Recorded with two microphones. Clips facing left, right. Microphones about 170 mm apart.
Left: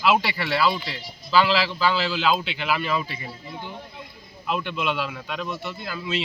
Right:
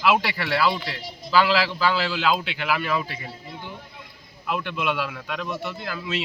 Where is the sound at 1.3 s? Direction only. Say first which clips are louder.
Even; 10° right (ahead or behind).